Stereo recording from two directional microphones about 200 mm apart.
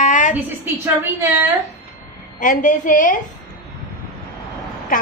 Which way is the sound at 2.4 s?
40° left (ahead or behind).